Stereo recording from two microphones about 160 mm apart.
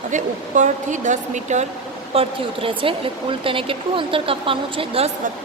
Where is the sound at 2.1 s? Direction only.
35° right (ahead or behind).